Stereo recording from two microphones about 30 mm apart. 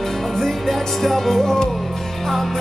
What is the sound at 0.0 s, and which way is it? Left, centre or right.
Music, centre.